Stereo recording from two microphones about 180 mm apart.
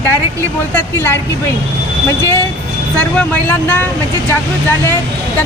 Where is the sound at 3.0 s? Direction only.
10° left (ahead or behind).